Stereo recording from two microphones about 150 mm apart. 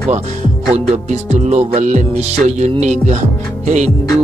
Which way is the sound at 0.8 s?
50° right (ahead or behind).